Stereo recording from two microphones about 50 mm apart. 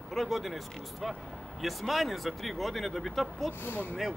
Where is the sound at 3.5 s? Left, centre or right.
Left.